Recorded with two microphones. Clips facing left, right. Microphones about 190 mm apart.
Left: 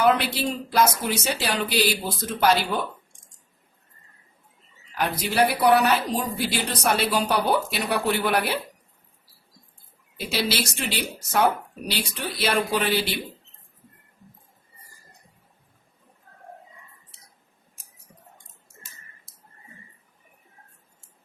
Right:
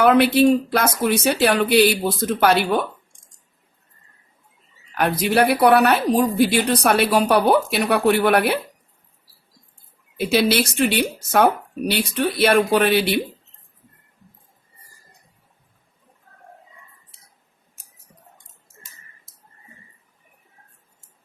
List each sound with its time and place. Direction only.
0.0 s a woman's voice: 60° right (ahead or behind)
4.9 s a woman's voice: 60° right (ahead or behind)
10.2 s a woman's voice: 60° right (ahead or behind)